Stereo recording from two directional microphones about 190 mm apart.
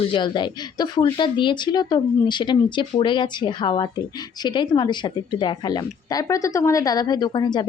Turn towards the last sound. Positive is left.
turn(degrees=20)  # may be behind; listen again after turning